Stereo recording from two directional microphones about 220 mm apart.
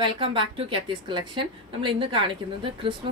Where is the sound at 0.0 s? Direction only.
20° right (ahead or behind).